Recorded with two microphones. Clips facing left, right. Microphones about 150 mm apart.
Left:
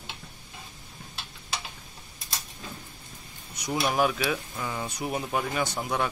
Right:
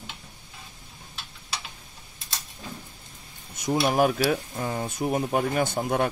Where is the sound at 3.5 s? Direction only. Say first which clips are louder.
Right 4 dB; 45° right (ahead or behind).